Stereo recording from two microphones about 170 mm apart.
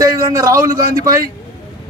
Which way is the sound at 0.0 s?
20° right (ahead or behind).